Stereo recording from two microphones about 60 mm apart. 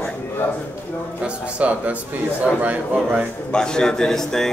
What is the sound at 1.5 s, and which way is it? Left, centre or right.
A man's voice, right.